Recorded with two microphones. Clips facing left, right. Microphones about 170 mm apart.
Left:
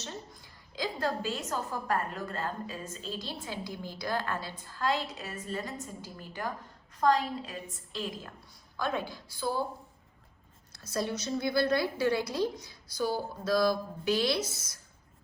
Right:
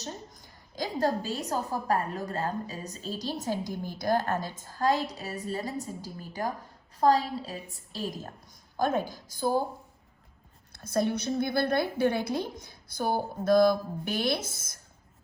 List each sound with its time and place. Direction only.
0.0 s a sound: 45° right (ahead or behind)
0.9 s a woman's voice: 40° right (ahead or behind)
10.7 s a woman's voice: 55° right (ahead or behind)